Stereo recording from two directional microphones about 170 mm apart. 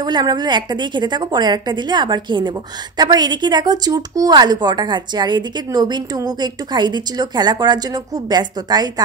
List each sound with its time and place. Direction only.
0.0 s speech: 25° right (ahead or behind)